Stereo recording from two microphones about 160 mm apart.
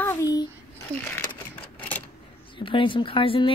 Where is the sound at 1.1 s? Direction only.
10° left (ahead or behind).